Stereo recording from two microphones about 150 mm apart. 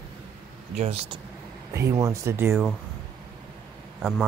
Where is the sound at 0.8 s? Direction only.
40° right (ahead or behind).